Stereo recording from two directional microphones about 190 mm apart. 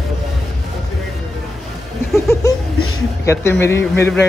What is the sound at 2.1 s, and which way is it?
A man's voice, 15° left (ahead or behind).